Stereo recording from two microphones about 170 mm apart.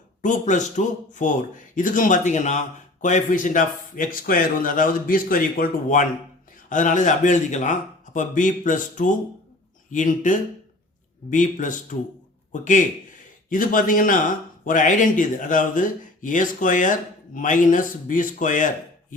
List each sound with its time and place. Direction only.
0.2 s a man's voice: 45° left (ahead or behind)